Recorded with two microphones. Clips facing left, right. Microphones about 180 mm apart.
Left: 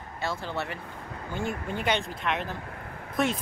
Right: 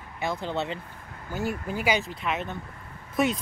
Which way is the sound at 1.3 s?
5° right (ahead or behind).